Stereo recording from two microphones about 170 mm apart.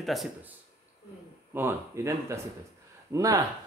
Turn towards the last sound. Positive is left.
turn(degrees=-20)  # may be behind; listen again after turning